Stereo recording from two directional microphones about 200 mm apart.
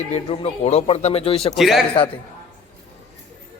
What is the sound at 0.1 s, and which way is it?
A man's voice, 30° left (ahead or behind).